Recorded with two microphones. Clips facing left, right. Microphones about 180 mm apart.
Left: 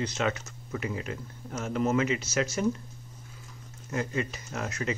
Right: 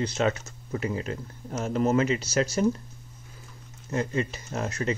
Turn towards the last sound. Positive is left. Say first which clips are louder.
# right 3 dB
turn(degrees=-30)  # may be behind; listen again after turning